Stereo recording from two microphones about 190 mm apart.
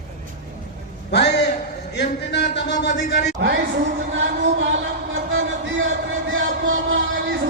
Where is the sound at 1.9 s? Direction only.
65° left (ahead or behind).